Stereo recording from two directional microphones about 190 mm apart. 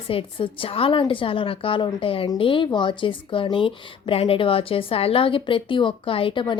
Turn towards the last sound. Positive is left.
turn(degrees=25)  # may be behind; listen again after turning